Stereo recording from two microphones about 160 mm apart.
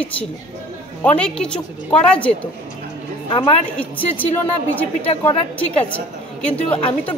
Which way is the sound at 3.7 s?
10° left (ahead or behind).